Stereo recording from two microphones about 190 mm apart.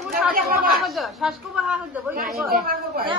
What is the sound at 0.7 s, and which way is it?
A man's voice, centre (ahead or behind).